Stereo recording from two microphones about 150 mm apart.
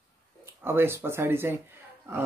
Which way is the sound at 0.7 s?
15° right (ahead or behind).